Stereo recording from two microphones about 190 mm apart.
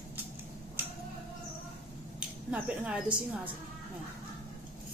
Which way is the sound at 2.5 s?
5° right (ahead or behind).